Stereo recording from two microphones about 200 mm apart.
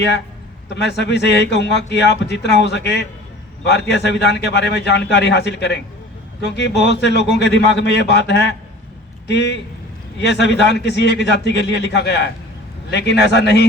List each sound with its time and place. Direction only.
0.7 s a man's voice: 60° left (ahead or behind)